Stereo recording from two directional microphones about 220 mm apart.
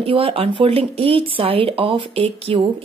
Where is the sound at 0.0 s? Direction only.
25° right (ahead or behind).